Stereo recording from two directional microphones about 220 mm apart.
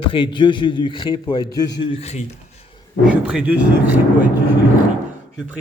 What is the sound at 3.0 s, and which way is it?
Speech, 5° right (ahead or behind).